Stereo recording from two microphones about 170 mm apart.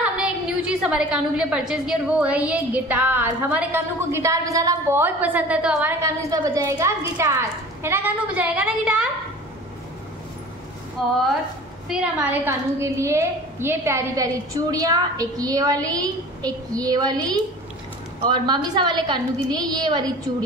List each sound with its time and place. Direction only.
0.0 s a woman's voice: 5° right (ahead or behind)
11.0 s a woman's voice: centre (ahead or behind); by 20.1 s 25° right (ahead or behind)